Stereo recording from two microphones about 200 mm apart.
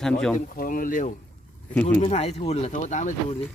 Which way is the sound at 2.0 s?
30° left (ahead or behind).